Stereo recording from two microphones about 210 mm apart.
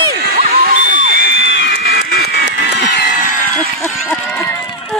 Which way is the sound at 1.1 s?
60° left (ahead or behind).